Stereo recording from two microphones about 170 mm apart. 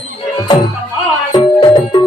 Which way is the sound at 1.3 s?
30° left (ahead or behind).